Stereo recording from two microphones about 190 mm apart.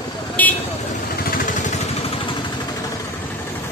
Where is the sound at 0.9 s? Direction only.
50° left (ahead or behind); by 2.5 s 25° left (ahead or behind).